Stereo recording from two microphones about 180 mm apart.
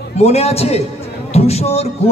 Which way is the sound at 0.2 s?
35° left (ahead or behind).